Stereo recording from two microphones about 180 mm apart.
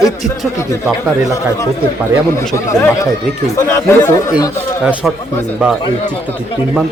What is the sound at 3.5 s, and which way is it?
Speech, 15° left (ahead or behind).